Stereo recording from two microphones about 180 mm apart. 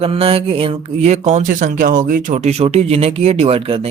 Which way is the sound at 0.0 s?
30° right (ahead or behind).